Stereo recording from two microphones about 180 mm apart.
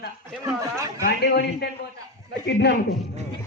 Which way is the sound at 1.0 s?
65° left (ahead or behind).